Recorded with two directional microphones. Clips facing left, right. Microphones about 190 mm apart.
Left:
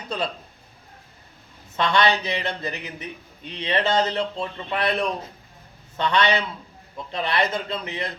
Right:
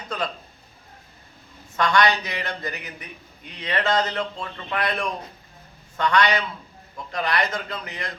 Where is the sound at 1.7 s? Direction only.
25° left (ahead or behind).